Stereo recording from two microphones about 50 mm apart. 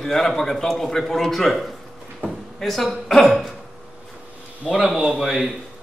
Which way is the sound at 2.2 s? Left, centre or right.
Right.